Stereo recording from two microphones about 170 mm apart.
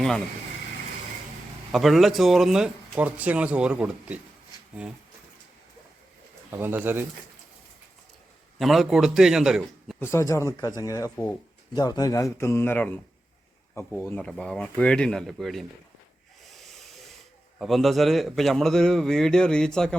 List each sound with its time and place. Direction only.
1.7 s speech: centre (ahead or behind)
6.5 s speech: 15° right (ahead or behind)
8.5 s a man's voice: centre (ahead or behind)
10.0 s speech: 15° left (ahead or behind)
16.6 s sanding: centre (ahead or behind)
17.6 s speech: centre (ahead or behind)